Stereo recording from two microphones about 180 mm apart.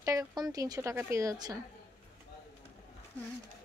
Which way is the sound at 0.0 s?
20° right (ahead or behind).